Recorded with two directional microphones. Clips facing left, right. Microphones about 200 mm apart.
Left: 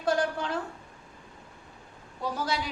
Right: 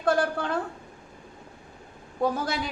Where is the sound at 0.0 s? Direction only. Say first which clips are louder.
Right 3 dB; 55° right (ahead or behind).